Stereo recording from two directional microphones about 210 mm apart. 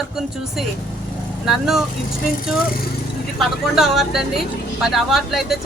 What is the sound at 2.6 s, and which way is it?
Speech, 45° left (ahead or behind).